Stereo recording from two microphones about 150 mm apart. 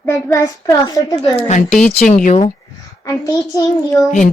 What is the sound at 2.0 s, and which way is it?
Speech, 55° left (ahead or behind).